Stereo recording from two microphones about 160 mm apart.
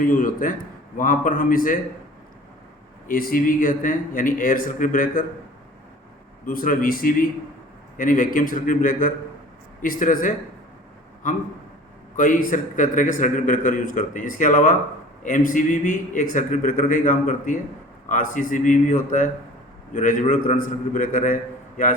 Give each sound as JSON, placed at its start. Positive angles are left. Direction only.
{"t": 0.0, "sound": "a man's voice", "side_deg": 60}
{"t": 3.1, "sound": "a man's voice", "side_deg": 60}
{"t": 6.4, "sound": "a man's voice", "side_deg": 60}
{"t": 12.1, "sound": "a man's voice", "side_deg": 55}